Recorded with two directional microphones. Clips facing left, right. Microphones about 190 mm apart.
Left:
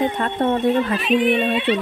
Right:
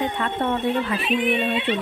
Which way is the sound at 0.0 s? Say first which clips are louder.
Left 4 dB; 40° left (ahead or behind).